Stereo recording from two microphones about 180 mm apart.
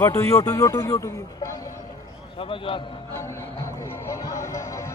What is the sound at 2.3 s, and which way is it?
Speech, 30° left (ahead or behind).